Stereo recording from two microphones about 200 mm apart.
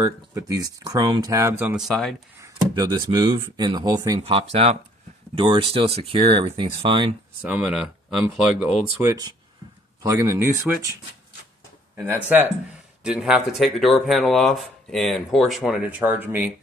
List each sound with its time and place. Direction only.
0.0 s speech: 15° right (ahead or behind); by 2.2 s centre (ahead or behind)
2.4 s speech: 20° right (ahead or behind)
4.2 s speech: 30° right (ahead or behind)
7.4 s speech: 5° right (ahead or behind)